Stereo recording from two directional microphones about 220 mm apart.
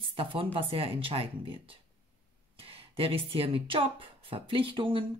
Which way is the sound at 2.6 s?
25° right (ahead or behind).